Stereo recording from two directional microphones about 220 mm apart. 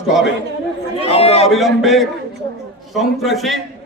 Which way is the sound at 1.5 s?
Centre (ahead or behind).